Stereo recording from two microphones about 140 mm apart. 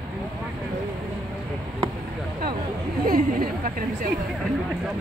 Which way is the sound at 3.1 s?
75° right (ahead or behind).